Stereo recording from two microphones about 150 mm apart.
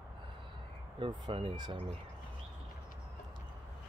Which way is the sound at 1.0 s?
35° right (ahead or behind).